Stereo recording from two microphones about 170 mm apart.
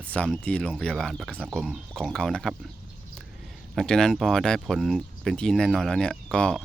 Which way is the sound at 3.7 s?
5° left (ahead or behind).